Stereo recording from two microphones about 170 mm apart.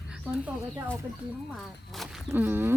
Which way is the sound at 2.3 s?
10° right (ahead or behind).